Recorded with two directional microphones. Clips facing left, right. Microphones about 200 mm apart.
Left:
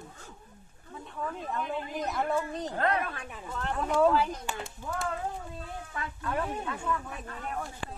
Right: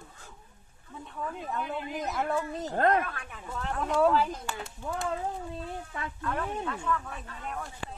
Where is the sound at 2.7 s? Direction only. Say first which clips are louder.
Right 5 dB; 45° right (ahead or behind).